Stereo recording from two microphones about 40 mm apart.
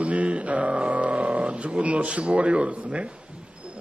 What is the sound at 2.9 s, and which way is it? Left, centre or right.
Speech, right.